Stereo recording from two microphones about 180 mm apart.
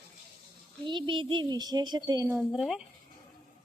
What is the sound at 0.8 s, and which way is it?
A child's voice, 25° right (ahead or behind).